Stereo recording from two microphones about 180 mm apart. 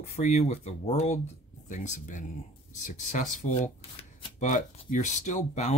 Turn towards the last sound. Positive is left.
turn(degrees=40)  # may be behind; listen again after turning